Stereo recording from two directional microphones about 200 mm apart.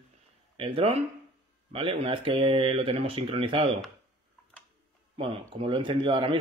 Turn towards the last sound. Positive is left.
turn(degrees=-25)  # may be behind; listen again after turning